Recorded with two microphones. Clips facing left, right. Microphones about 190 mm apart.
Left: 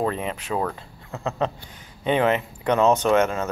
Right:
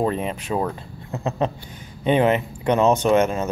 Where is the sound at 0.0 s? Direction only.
20° right (ahead or behind).